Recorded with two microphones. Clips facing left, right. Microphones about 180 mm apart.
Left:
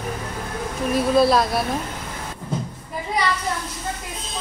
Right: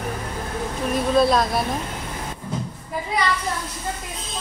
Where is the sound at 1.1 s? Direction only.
5° left (ahead or behind).